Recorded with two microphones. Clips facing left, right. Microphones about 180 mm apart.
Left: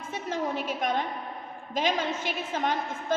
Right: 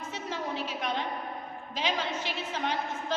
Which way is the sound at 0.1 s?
50° left (ahead or behind).